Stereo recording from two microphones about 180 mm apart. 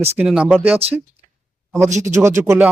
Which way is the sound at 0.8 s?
35° right (ahead or behind).